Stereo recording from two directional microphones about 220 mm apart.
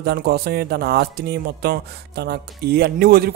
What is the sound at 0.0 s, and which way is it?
A man's voice, 45° right (ahead or behind).